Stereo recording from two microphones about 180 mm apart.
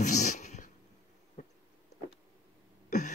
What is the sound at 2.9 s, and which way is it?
Throat clearing, 45° left (ahead or behind).